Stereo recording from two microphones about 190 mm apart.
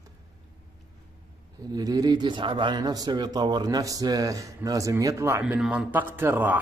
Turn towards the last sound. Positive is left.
turn(degrees=-10)  # may be behind; listen again after turning